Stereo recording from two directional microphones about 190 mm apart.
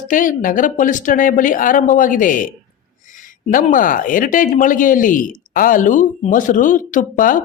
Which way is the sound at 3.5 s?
45° left (ahead or behind).